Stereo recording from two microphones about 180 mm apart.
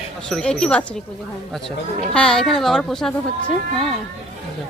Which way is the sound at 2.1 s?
5° left (ahead or behind).